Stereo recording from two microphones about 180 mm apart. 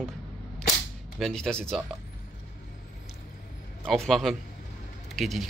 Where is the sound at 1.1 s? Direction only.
Centre (ahead or behind).